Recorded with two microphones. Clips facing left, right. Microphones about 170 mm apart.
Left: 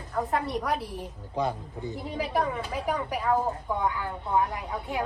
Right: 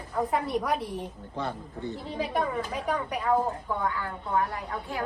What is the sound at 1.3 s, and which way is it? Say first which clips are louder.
A woman's voice: left 5 dB; 15° left (ahead or behind).